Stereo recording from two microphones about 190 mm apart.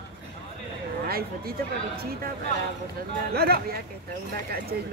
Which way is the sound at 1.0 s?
55° right (ahead or behind).